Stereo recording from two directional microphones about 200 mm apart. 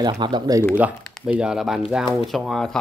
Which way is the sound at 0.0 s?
20° right (ahead or behind).